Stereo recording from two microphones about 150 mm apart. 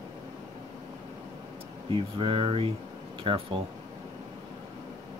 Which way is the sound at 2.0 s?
35° right (ahead or behind).